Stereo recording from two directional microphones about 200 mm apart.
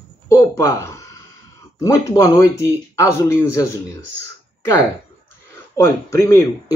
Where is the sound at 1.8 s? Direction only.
15° left (ahead or behind).